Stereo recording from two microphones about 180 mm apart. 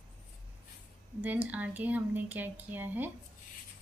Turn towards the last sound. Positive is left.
turn(degrees=-10)  # may be behind; listen again after turning